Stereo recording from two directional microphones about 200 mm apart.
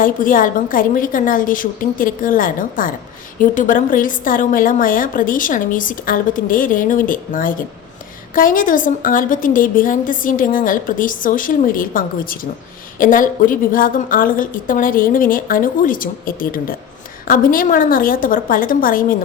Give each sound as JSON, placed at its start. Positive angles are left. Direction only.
{"t": 0.0, "sound": "a woman's voice", "side_deg": 45}